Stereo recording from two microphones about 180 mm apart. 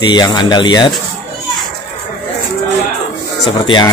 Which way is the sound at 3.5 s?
25° left (ahead or behind).